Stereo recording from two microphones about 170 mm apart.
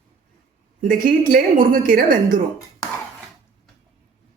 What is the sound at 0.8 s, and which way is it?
A woman's voice, 55° right (ahead or behind).